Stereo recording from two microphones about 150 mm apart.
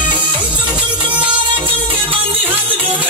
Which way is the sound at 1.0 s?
35° right (ahead or behind).